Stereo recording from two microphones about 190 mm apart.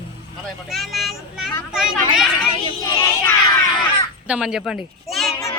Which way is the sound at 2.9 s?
15° left (ahead or behind).